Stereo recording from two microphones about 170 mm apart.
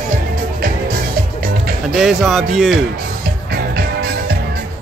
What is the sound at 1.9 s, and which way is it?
Speech, centre (ahead or behind).